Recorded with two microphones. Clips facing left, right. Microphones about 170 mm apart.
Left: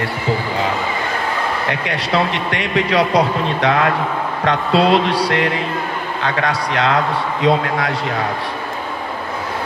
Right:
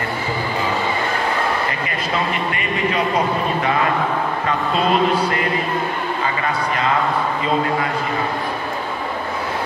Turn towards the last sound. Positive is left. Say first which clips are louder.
# left 3 dB
turn(degrees=80)